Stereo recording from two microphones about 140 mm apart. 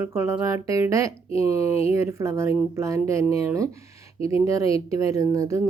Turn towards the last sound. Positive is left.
turn(degrees=-20)  # may be behind; listen again after turning